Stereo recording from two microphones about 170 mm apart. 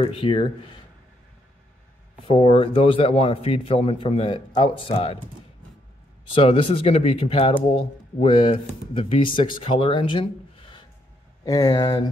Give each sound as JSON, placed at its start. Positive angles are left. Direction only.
{"t": 0.0, "sound": "a man's voice", "side_deg": 30}
{"t": 2.2, "sound": "a man's voice", "side_deg": 35}
{"t": 6.3, "sound": "a man's voice", "side_deg": 30}
{"t": 11.4, "sound": "speech", "side_deg": 20}